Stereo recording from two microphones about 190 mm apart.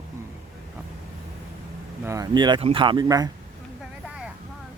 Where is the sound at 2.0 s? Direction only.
20° right (ahead or behind).